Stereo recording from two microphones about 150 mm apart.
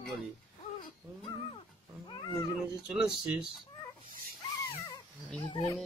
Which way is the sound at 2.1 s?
30° left (ahead or behind).